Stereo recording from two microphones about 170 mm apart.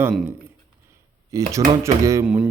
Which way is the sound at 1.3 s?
20° right (ahead or behind).